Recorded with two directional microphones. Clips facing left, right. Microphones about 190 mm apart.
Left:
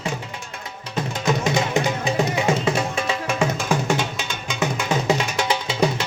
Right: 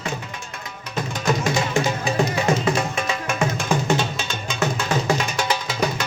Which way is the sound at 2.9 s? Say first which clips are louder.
Left 1 dB; 30° left (ahead or behind).